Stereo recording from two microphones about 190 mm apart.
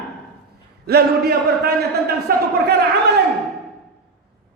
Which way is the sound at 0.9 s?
55° right (ahead or behind).